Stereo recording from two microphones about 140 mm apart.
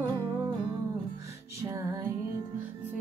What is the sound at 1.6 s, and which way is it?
Music, 20° right (ahead or behind).